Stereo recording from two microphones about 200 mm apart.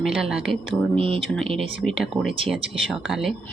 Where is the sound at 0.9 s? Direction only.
30° right (ahead or behind).